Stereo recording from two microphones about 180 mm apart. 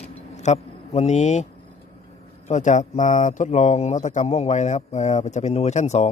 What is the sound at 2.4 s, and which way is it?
Speech, 40° left (ahead or behind).